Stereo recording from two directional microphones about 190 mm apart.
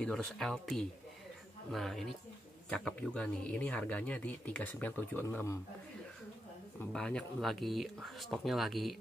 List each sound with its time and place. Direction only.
0.0 s speech: centre (ahead or behind)
6.8 s speech: 5° left (ahead or behind)